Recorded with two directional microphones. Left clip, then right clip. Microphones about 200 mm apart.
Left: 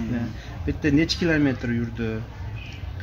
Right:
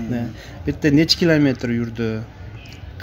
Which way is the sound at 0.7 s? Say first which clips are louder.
Right 6 dB; 45° right (ahead or behind).